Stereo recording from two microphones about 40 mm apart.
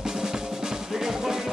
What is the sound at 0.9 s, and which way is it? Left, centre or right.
Music, centre.